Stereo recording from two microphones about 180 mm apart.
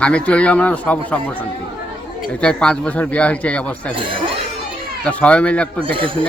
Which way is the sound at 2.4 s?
5° left (ahead or behind).